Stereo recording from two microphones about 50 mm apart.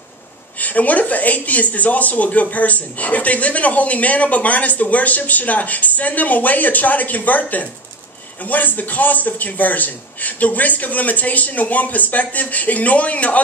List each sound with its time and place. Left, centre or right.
0.6 s speech: left